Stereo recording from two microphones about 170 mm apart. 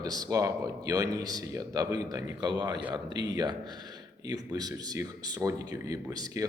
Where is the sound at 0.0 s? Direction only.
20° right (ahead or behind).